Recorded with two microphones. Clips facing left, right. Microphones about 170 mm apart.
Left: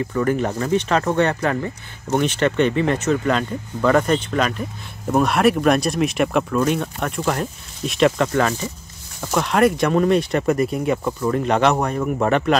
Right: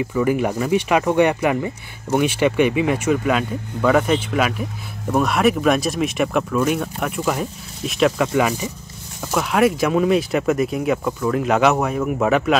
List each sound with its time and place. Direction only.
0.0 s speech: 10° right (ahead or behind)